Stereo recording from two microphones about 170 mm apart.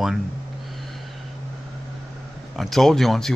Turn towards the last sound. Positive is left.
turn(degrees=0)  # may be behind; listen again after turning